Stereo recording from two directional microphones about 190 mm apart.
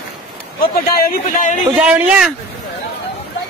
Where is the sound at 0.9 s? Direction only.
50° left (ahead or behind).